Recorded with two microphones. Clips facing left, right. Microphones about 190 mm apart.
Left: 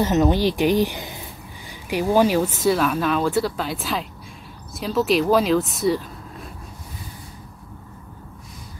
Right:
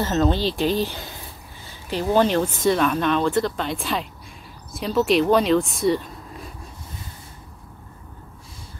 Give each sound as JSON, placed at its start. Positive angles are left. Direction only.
{"t": 0.0, "sound": "speech", "side_deg": 15}